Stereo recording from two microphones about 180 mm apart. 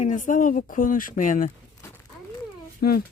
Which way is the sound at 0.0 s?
45° left (ahead or behind).